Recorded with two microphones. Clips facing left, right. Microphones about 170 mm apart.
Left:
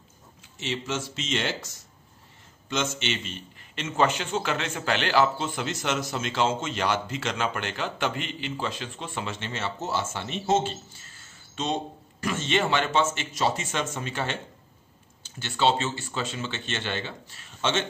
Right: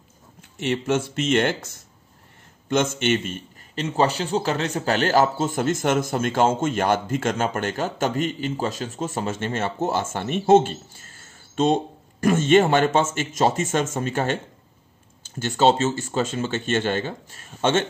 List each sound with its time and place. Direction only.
0.4 s a man's voice: 55° right (ahead or behind)
3.7 s a man's voice: 35° right (ahead or behind)